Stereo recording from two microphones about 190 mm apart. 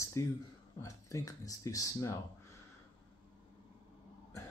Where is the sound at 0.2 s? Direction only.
15° left (ahead or behind).